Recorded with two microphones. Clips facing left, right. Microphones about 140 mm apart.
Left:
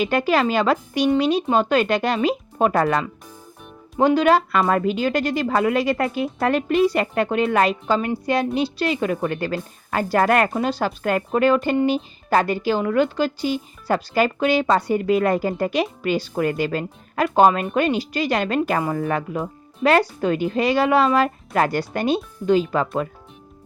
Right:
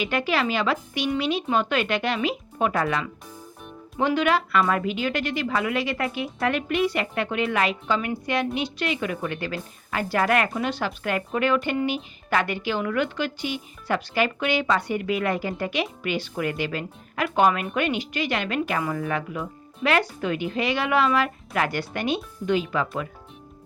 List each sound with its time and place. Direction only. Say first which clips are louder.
0.0 s a woman's voice: left 5 dB; 45° left (ahead or behind)